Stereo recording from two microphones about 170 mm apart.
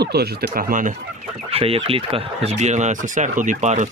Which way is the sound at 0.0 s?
70° right (ahead or behind).